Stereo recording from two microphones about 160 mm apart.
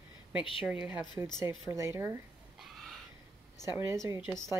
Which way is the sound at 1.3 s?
15° right (ahead or behind).